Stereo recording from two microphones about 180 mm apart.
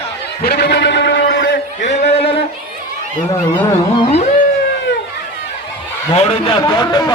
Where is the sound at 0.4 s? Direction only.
65° left (ahead or behind).